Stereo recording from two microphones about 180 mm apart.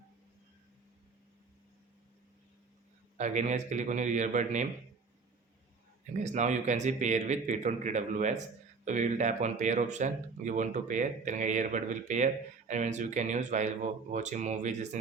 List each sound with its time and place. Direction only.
3.2 s a man's voice: 40° right (ahead or behind)
6.1 s a man's voice: 40° right (ahead or behind)